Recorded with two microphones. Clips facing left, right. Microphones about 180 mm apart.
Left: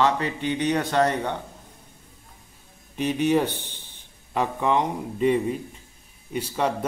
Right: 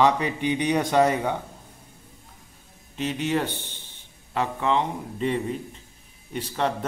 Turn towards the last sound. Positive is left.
turn(degrees=10)  # may be behind; listen again after turning